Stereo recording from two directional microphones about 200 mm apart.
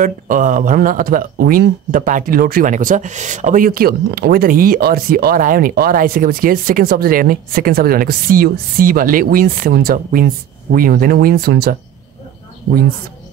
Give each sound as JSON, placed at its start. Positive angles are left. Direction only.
{"t": 0.0, "sound": "speech", "side_deg": -40}